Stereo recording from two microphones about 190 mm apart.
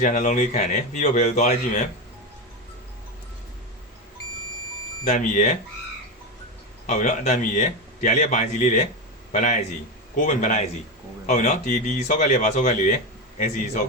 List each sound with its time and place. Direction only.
0.0 s a man's voice: 40° left (ahead or behind)
5.0 s a man's voice: 40° left (ahead or behind)
6.8 s a man's voice: 40° left (ahead or behind)